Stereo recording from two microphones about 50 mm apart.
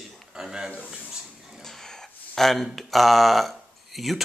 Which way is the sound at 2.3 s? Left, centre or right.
Centre.